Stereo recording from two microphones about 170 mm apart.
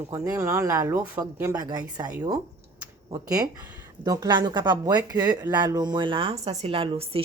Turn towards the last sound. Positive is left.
turn(degrees=-35)  # may be behind; listen again after turning